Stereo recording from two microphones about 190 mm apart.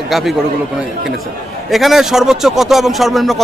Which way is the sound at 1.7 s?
Centre (ahead or behind).